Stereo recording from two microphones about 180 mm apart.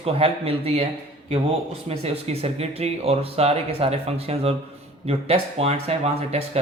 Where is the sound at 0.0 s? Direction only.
30° right (ahead or behind).